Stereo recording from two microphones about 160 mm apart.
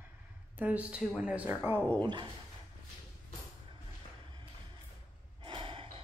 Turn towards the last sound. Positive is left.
turn(degrees=-30)  # may be behind; listen again after turning